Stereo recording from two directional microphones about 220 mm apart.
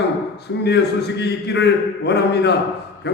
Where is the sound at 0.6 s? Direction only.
50° left (ahead or behind).